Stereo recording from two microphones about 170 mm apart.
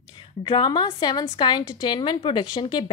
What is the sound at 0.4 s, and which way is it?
A woman's voice, 25° left (ahead or behind).